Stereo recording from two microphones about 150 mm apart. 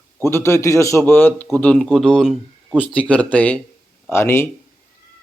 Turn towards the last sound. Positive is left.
turn(degrees=15)  # may be behind; listen again after turning